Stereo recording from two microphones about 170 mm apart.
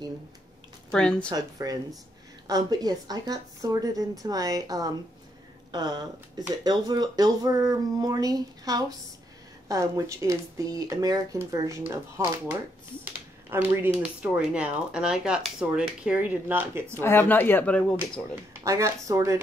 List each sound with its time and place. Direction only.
0.9 s a woman's voice: 5° left (ahead or behind)
1.3 s speech: 20° right (ahead or behind)
13.0 s speech: 10° right (ahead or behind)
17.0 s speech: 10° left (ahead or behind)
18.3 s speech: 20° right (ahead or behind)